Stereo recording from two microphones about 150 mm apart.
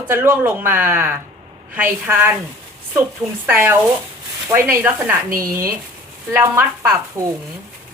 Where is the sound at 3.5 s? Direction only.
15° right (ahead or behind).